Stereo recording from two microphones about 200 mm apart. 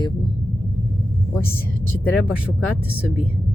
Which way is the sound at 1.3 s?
10° left (ahead or behind).